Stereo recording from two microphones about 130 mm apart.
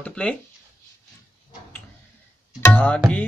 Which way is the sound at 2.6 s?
15° left (ahead or behind).